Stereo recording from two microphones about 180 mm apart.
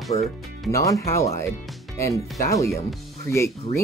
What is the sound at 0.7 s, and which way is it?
Speech, 20° left (ahead or behind).